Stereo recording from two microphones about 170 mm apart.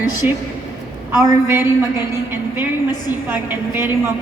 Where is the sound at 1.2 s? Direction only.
15° right (ahead or behind).